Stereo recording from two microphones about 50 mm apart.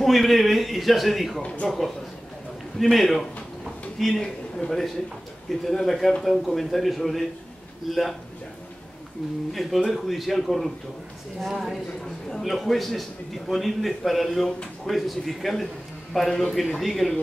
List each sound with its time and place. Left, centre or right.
0.0 s a man's voice: centre
1.4 s speech: left
2.8 s a man's voice: centre
3.6 s a sound: centre
4.2 s a man's voice: centre
9.5 s a man's voice: centre
11.5 s a woman's voice: centre
12.3 s a man's voice: centre